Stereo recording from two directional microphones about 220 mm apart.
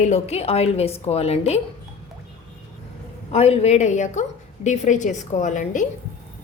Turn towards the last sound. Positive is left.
turn(degrees=35)  # may be behind; listen again after turning